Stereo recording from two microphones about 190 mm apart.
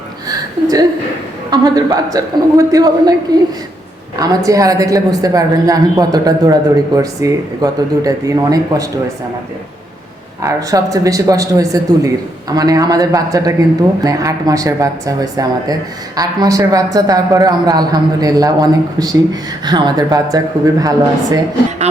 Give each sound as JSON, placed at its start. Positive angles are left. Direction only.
{"t": 0.3, "sound": "a sound", "side_deg": -20}
{"t": 1.5, "sound": "a woman's voice", "side_deg": -20}
{"t": 4.2, "sound": "a woman's voice", "side_deg": -20}
{"t": 10.4, "sound": "a woman's voice", "side_deg": -20}